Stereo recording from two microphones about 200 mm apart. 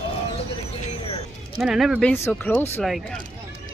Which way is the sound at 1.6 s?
Centre (ahead or behind).